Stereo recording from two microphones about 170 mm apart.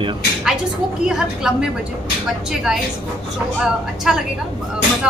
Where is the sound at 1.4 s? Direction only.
5° right (ahead or behind).